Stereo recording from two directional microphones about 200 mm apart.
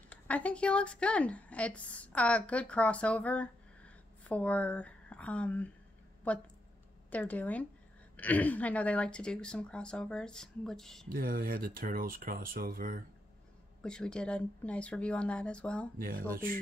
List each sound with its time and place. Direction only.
0.1 s a woman's voice: 5° left (ahead or behind)
11.1 s speech: 45° right (ahead or behind)
13.8 s speech: 5° left (ahead or behind)
16.0 s speech: 45° right (ahead or behind)